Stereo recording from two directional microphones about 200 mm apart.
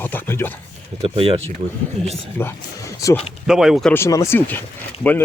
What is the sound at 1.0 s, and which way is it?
Speech, 25° right (ahead or behind).